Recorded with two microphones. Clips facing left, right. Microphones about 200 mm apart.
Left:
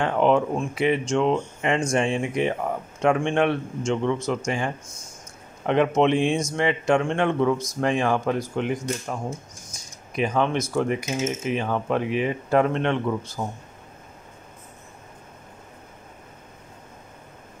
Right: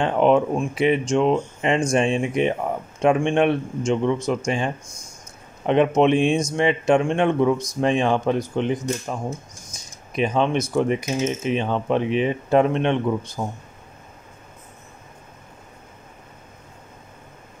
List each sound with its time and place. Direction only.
0.0 s speech: 20° right (ahead or behind)
10.1 s speech: 20° right (ahead or behind)